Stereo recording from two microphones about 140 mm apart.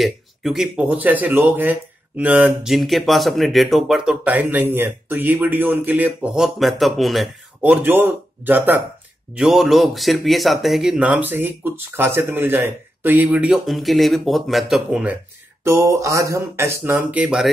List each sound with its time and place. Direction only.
0.0 s speech: centre (ahead or behind)
7.6 s speech: 10° right (ahead or behind)
9.3 s speech: centre (ahead or behind)
13.7 s speech: centre (ahead or behind)
15.6 s speech: 20° right (ahead or behind)